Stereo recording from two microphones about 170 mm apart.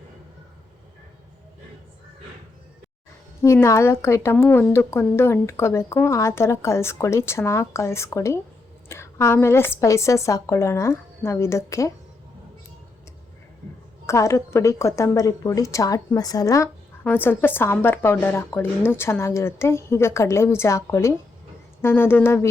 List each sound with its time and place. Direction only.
3.4 s a woman's voice: 15° left (ahead or behind)
14.1 s a woman's voice: 15° left (ahead or behind)